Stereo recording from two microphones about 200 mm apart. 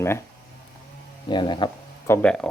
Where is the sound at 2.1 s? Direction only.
5° left (ahead or behind).